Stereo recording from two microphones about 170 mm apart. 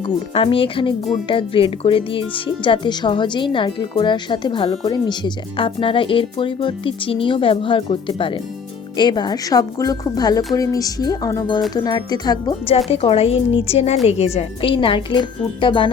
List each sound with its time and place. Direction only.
0.3 s a woman's voice: 30° left (ahead or behind)
12.9 s speech: 35° left (ahead or behind)